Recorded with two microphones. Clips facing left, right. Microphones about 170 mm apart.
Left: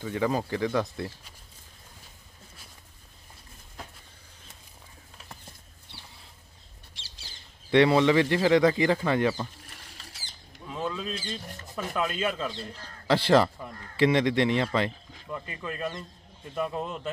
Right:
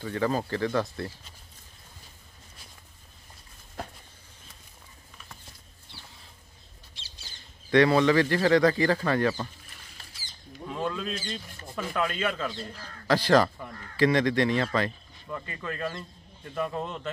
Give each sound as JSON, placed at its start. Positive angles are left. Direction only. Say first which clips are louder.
{"t": 0.0, "sound": "speech", "louder": "even", "side_deg": 15}
{"t": 7.7, "sound": "speech", "louder": "even", "side_deg": 20}
{"t": 9.7, "sound": "rodents", "louder": "left 3 dB", "side_deg": 70}
{"t": 10.7, "sound": "bird", "louder": "right 1 dB", "side_deg": 0}
{"t": 11.6, "sound": "speech", "louder": "right 1 dB", "side_deg": 0}
{"t": 13.0, "sound": "speech", "louder": "even", "side_deg": 25}